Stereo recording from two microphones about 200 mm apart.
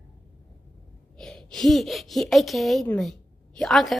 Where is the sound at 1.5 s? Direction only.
Centre (ahead or behind).